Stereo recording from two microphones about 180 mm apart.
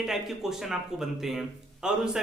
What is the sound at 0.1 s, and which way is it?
Speech, centre (ahead or behind).